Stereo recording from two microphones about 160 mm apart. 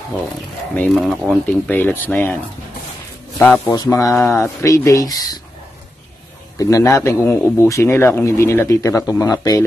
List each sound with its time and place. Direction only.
0.7 s a man's voice: centre (ahead or behind)
3.3 s speech: 5° left (ahead or behind)
3.6 s speech: 20° left (ahead or behind)
6.6 s a man's voice: 20° left (ahead or behind)